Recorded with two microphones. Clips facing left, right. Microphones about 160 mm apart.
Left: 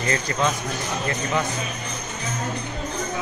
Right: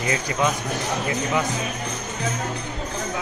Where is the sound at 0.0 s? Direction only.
10° right (ahead or behind).